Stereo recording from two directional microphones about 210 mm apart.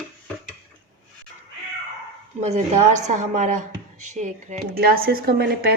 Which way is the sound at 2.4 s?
35° right (ahead or behind).